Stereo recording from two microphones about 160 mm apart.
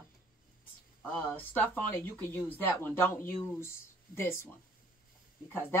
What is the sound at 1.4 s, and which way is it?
Speech, 10° left (ahead or behind).